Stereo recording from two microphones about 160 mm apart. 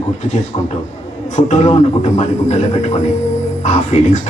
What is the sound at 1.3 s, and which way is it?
A man's voice, 45° left (ahead or behind).